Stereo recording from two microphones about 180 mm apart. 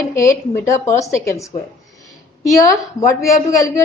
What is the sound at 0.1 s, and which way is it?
A woman's voice, 15° left (ahead or behind).